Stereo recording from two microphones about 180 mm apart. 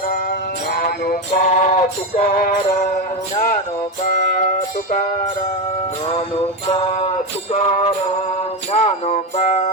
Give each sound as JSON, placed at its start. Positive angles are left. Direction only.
{"t": 0.7, "sound": "music", "side_deg": 55}
{"t": 6.7, "sound": "music", "side_deg": 30}